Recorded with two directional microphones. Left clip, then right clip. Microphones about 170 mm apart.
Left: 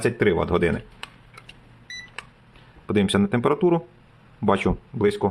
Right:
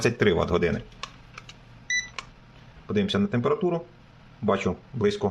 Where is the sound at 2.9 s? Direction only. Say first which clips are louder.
Left 4 dB; 35° left (ahead or behind).